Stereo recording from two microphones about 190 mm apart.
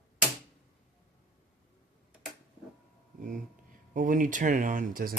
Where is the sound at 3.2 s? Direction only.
45° right (ahead or behind).